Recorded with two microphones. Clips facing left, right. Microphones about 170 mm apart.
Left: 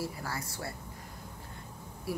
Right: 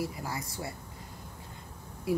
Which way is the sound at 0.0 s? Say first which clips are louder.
Right 2 dB; 15° right (ahead or behind).